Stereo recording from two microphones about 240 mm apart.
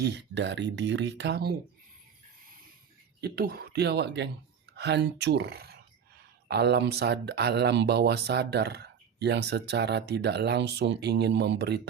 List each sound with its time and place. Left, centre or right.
0.0 s speech: right
3.2 s speech: right